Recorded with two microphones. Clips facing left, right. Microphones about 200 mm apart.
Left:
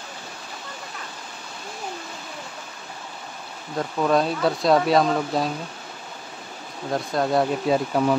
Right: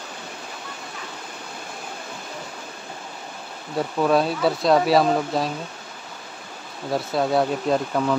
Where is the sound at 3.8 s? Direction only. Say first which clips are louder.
Right 1 dB; 5° right (ahead or behind).